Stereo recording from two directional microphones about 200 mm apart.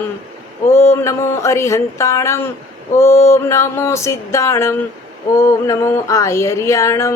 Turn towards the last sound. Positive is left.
turn(degrees=15)  # may be behind; listen again after turning